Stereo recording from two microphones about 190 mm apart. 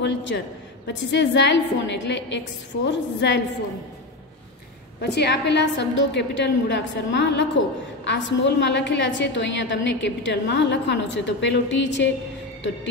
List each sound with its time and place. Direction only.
0.0 s a woman's voice: 70° left (ahead or behind)
5.0 s a woman's voice: 65° left (ahead or behind)